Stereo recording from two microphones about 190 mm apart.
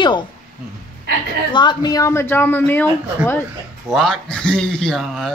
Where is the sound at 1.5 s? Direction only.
25° left (ahead or behind).